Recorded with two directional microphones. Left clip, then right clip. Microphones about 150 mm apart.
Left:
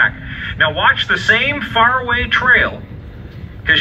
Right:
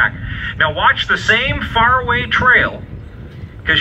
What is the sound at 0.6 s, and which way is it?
A man's voice, 35° right (ahead or behind).